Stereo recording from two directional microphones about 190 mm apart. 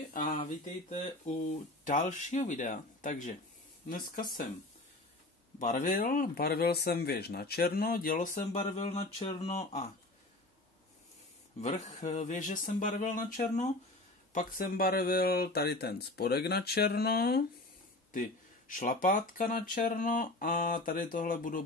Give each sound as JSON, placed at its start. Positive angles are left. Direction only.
{"t": 0.1, "sound": "speech", "side_deg": 45}
{"t": 5.6, "sound": "speech", "side_deg": 40}
{"t": 11.6, "sound": "speech", "side_deg": 40}
{"t": 18.1, "sound": "speech", "side_deg": 45}